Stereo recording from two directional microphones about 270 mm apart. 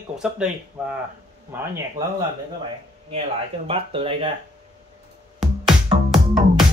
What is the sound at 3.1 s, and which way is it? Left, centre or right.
Speech, right.